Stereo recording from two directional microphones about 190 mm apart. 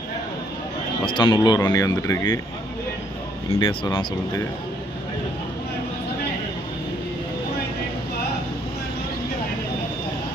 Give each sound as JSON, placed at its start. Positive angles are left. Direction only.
{"t": 1.0, "sound": "speech", "side_deg": 25}
{"t": 3.6, "sound": "speech", "side_deg": 25}